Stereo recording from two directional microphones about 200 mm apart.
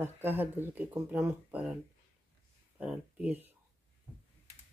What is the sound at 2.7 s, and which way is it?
Speech, 5° right (ahead or behind).